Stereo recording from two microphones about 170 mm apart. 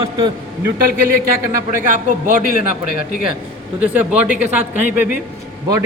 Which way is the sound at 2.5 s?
55° left (ahead or behind).